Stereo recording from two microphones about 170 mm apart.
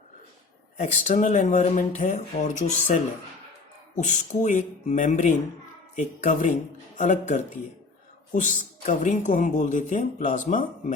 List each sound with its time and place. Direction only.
0.8 s speech: 50° left (ahead or behind)